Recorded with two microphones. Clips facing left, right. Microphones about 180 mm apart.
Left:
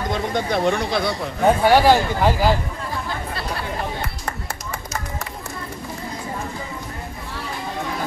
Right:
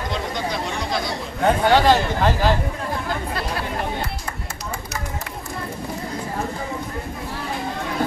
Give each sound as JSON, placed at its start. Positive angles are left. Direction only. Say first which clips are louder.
{"t": 0.3, "sound": "speech", "louder": "left 6 dB", "side_deg": 55}
{"t": 1.4, "sound": "speech", "louder": "left 2 dB", "side_deg": 10}